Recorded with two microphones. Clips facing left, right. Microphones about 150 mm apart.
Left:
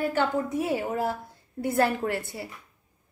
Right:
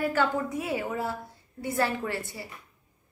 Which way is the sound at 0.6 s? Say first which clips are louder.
Left 3 dB; 35° left (ahead or behind).